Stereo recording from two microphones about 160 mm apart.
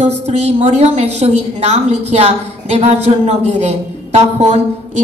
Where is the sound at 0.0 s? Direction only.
45° right (ahead or behind).